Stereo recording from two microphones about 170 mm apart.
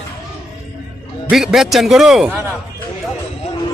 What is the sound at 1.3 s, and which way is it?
Speech, centre (ahead or behind).